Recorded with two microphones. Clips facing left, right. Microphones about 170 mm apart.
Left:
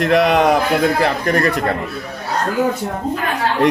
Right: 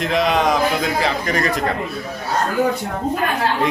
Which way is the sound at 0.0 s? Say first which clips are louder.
Left 4 dB; 65° left (ahead or behind).